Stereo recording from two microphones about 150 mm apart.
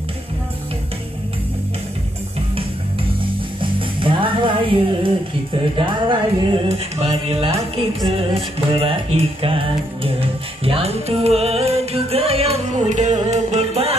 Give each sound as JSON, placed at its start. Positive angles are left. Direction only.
{"t": 3.6, "sound": "music", "side_deg": -35}